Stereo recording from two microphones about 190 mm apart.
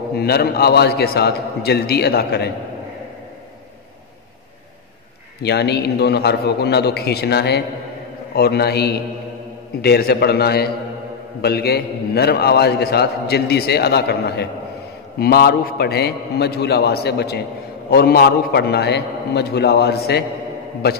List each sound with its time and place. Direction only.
0.1 s a man's voice: 55° left (ahead or behind)
5.4 s a man's voice: 60° left (ahead or behind)